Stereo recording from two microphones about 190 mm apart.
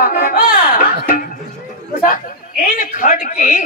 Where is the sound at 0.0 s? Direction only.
50° left (ahead or behind).